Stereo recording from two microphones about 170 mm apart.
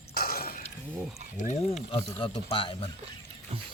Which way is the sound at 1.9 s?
30° left (ahead or behind).